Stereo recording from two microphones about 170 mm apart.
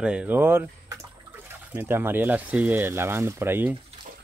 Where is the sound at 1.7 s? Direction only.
15° right (ahead or behind).